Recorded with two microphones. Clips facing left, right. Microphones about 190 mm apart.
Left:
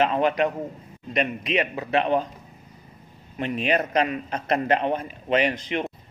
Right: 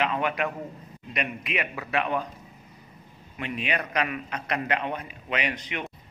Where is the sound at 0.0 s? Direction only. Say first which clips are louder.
Left 6 dB; 35° left (ahead or behind).